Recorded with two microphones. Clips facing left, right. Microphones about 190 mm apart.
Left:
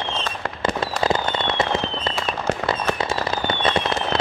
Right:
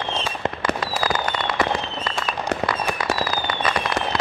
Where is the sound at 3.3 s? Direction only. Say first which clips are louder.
Left 2 dB; 25° left (ahead or behind).